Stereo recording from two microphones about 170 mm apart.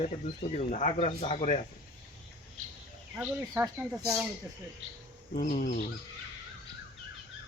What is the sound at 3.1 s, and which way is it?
Speech, 10° right (ahead or behind).